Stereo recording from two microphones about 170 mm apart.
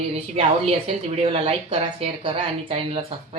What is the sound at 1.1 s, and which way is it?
Speech, 35° right (ahead or behind).